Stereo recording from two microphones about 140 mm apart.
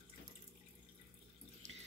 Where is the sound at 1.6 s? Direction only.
55° right (ahead or behind).